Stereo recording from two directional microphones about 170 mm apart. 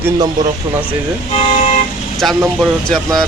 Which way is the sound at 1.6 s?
50° left (ahead or behind).